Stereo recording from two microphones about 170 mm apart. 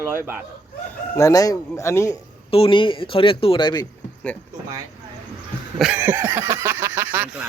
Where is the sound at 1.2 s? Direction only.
20° left (ahead or behind).